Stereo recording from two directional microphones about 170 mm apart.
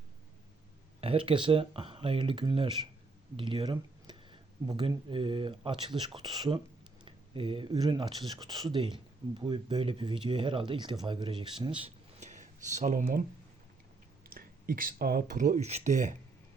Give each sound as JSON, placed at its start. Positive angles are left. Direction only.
{"t": 1.0, "sound": "speech", "side_deg": -30}
{"t": 12.2, "sound": "speech", "side_deg": -45}
{"t": 14.3, "sound": "speech", "side_deg": -55}